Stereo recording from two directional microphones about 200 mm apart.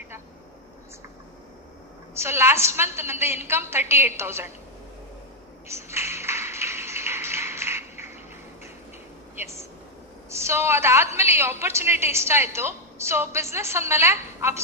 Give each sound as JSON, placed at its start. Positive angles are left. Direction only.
{"t": 2.1, "sound": "a woman's voice", "side_deg": -10}
{"t": 5.6, "sound": "tap", "side_deg": -15}
{"t": 9.4, "sound": "a sound", "side_deg": -15}
{"t": 10.3, "sound": "a woman's voice", "side_deg": -15}